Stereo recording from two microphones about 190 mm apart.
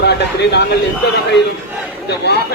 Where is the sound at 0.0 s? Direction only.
60° left (ahead or behind).